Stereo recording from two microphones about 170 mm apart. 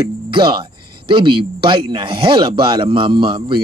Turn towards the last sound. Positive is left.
turn(degrees=-30)  # may be behind; listen again after turning